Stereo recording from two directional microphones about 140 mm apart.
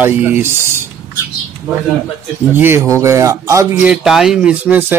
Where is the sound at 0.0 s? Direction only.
15° right (ahead or behind).